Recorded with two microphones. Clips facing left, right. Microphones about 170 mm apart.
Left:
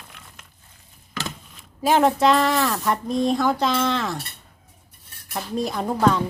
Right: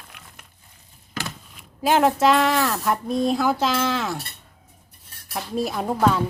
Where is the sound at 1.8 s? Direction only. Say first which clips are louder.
Even; centre (ahead or behind).